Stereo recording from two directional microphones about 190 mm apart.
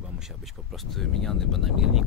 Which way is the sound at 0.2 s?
Centre (ahead or behind).